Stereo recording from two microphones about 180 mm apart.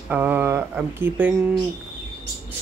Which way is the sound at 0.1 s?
10° right (ahead or behind).